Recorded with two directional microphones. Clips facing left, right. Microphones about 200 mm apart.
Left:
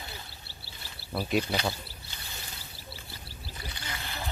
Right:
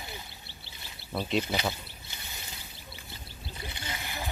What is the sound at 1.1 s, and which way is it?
Speech, 5° left (ahead or behind).